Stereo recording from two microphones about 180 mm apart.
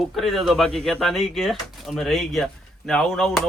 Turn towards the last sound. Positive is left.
turn(degrees=0)  # may be behind; listen again after turning